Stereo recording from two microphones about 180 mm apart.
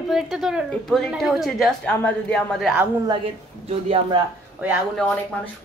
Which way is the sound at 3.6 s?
35° right (ahead or behind).